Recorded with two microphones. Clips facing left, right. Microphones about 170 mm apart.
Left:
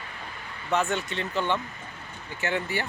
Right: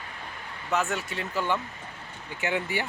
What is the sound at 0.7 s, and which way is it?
Speech, 5° right (ahead or behind).